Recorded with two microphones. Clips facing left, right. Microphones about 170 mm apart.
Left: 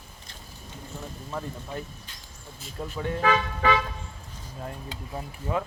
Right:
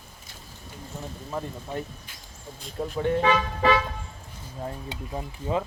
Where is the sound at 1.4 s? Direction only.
20° right (ahead or behind).